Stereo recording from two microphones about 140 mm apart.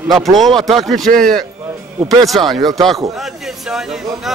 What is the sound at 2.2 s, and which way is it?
A man's voice, centre (ahead or behind).